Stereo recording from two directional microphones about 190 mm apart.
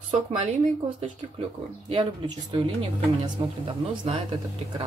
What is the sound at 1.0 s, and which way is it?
Speech, 30° right (ahead or behind).